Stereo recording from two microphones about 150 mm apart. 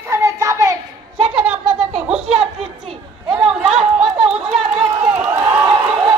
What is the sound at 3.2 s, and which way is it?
Chatter, 5° right (ahead or behind).